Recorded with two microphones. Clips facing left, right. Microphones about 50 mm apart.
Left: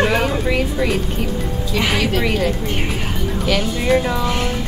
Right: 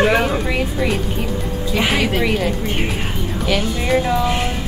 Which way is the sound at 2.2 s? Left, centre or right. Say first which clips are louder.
Even; centre.